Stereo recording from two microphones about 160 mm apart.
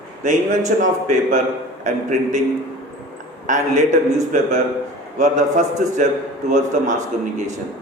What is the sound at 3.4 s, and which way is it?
Speech, 50° right (ahead or behind).